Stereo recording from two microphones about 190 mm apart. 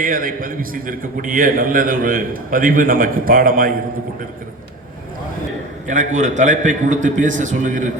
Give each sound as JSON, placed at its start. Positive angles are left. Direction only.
{"t": 0.0, "sound": "a man's voice", "side_deg": -45}
{"t": 5.9, "sound": "a man's voice", "side_deg": -40}